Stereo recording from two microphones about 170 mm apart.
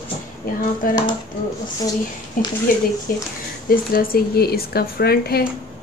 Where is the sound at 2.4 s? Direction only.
55° left (ahead or behind).